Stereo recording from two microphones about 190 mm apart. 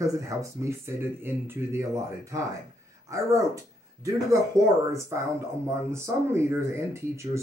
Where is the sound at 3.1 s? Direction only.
15° right (ahead or behind).